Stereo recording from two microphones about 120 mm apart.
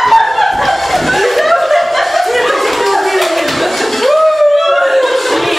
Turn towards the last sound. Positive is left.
turn(degrees=0)  # may be behind; listen again after turning